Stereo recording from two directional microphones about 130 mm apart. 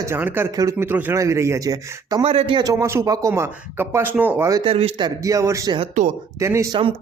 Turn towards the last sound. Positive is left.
turn(degrees=-20)  # may be behind; listen again after turning